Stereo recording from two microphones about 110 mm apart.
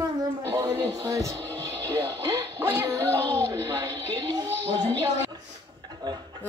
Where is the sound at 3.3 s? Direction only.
25° right (ahead or behind).